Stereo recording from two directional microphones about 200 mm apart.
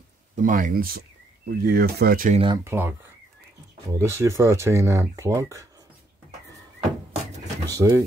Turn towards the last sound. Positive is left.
turn(degrees=-15)  # may be behind; listen again after turning